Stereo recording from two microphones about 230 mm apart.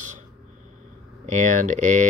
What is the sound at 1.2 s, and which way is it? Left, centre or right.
Speech, right.